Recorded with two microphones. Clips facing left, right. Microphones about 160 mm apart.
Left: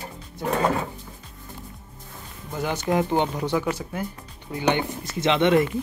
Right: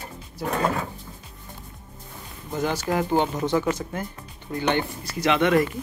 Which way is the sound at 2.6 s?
20° left (ahead or behind).